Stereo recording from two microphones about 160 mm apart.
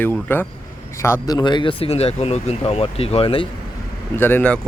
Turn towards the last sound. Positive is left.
turn(degrees=10)  # may be behind; listen again after turning